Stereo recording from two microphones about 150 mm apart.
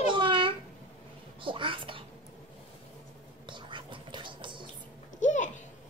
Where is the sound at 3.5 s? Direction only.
30° right (ahead or behind).